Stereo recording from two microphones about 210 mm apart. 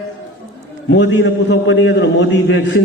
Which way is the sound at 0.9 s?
60° left (ahead or behind).